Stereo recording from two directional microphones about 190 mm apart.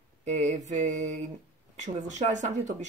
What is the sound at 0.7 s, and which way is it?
Speech, 40° right (ahead or behind).